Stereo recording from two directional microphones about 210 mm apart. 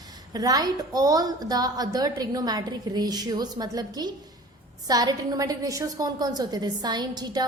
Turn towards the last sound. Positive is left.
turn(degrees=-20)  # may be behind; listen again after turning